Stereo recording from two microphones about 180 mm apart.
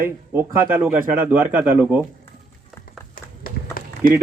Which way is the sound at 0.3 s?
10° right (ahead or behind).